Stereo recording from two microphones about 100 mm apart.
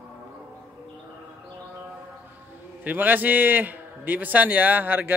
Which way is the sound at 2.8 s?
15° right (ahead or behind).